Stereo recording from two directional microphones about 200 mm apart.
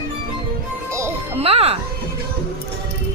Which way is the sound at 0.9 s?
15° right (ahead or behind).